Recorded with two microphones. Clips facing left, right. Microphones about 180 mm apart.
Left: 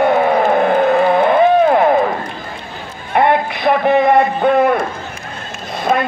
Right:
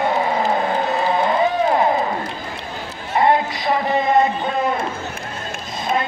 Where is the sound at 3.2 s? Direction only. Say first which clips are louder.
Left 3 dB; 60° left (ahead or behind).